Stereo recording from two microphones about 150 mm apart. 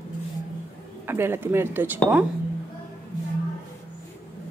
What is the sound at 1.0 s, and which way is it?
Speech, 15° right (ahead or behind).